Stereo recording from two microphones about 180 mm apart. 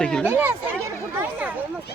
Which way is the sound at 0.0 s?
5° left (ahead or behind).